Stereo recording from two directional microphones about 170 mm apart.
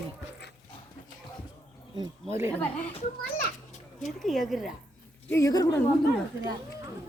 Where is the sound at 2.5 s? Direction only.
10° left (ahead or behind).